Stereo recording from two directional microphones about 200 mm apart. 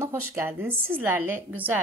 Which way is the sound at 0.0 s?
10° right (ahead or behind).